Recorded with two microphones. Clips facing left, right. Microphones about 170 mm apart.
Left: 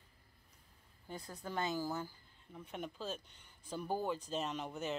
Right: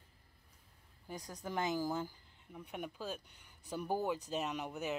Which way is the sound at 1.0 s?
15° right (ahead or behind).